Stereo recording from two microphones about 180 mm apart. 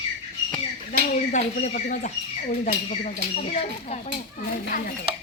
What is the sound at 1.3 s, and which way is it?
Speech, 40° left (ahead or behind).